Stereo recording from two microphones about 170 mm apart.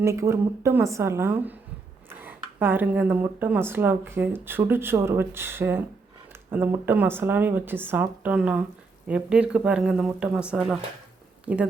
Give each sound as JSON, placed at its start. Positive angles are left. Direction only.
{"t": 0.0, "sound": "speech", "side_deg": -15}